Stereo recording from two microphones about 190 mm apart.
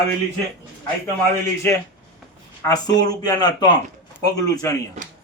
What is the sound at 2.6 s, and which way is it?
A man's voice, 20° left (ahead or behind).